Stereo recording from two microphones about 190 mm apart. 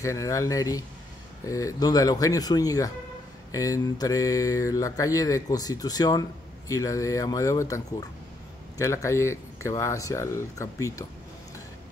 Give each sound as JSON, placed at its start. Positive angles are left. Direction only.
{"t": 0.0, "sound": "speech", "side_deg": 15}